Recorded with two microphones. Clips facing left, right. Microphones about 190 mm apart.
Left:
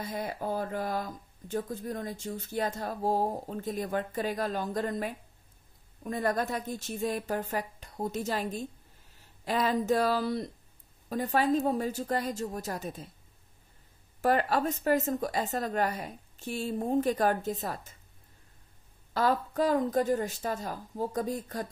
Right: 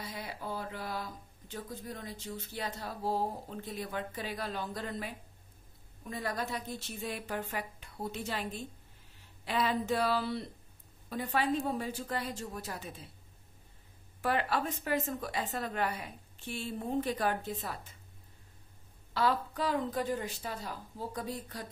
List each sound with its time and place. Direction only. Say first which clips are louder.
0.0 s speech: left 7 dB; 45° left (ahead or behind)
14.2 s a woman's voice: left 5 dB; 40° left (ahead or behind)
19.1 s speech: left 4 dB; 45° left (ahead or behind)